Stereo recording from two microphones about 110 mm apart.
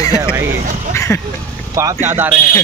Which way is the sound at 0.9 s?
30° left (ahead or behind).